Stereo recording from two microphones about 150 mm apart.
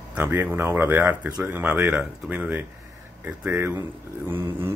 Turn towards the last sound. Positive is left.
turn(degrees=-15)  # may be behind; listen again after turning